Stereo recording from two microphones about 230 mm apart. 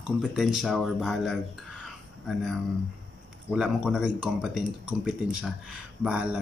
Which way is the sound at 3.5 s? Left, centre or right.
Centre.